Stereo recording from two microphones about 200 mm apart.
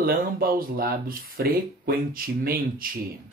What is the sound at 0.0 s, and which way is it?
Speech, 45° right (ahead or behind).